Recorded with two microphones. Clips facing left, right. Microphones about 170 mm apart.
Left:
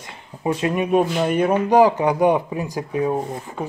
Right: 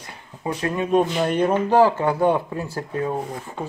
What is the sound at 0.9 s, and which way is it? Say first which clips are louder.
Speech: even; 5° left (ahead or behind).